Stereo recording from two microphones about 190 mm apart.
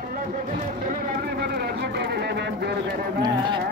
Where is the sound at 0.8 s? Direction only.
50° right (ahead or behind).